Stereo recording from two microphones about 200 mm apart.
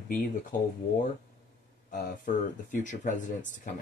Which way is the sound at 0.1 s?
40° left (ahead or behind).